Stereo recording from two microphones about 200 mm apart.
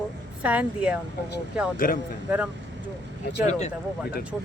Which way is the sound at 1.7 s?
45° left (ahead or behind).